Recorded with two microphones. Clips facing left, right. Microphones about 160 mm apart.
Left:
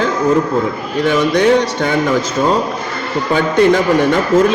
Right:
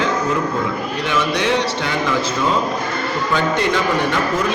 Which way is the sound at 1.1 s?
45° left (ahead or behind).